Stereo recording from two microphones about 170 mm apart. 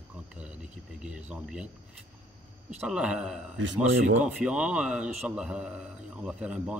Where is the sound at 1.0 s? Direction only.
5° right (ahead or behind).